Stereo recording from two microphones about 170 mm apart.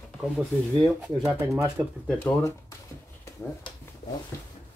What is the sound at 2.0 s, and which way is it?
Speech, 10° left (ahead or behind).